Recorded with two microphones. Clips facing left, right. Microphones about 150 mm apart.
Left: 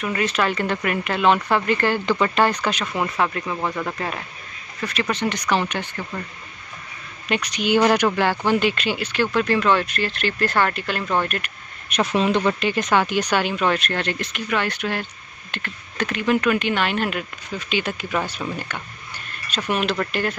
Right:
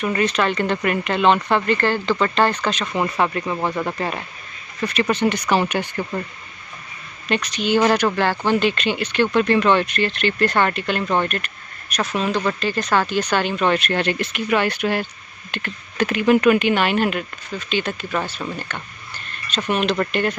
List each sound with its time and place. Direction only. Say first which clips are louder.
0.0 s speech: right 2 dB; centre (ahead or behind)
7.2 s speech: right 1 dB; 10° left (ahead or behind)
12.1 s speech: left 2 dB; 20° left (ahead or behind); by 20.3 s centre (ahead or behind)